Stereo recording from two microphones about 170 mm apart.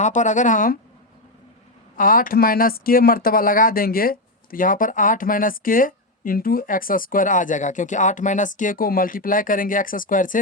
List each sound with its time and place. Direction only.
0.0 s a woman's voice: 45° left (ahead or behind)
2.0 s speech: 55° left (ahead or behind)